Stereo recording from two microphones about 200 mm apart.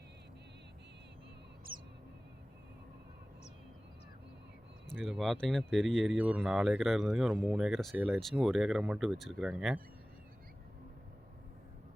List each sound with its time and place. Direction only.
4.9 s speech: centre (ahead or behind)